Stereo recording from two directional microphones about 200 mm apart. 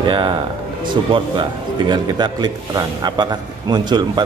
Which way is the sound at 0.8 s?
25° right (ahead or behind).